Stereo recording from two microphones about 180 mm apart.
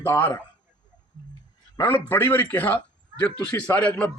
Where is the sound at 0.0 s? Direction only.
15° left (ahead or behind).